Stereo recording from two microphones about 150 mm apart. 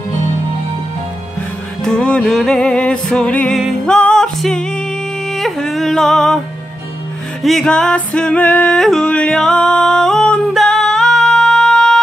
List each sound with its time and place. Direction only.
1.8 s music: 5° left (ahead or behind)
7.4 s music: 5° left (ahead or behind)